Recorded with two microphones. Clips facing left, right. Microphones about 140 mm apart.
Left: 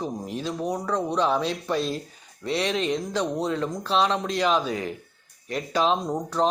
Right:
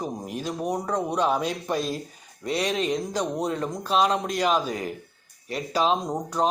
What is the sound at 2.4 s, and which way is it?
Speech, 40° right (ahead or behind).